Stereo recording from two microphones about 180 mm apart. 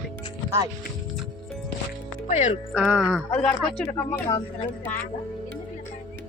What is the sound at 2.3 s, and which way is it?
Speech, 40° left (ahead or behind).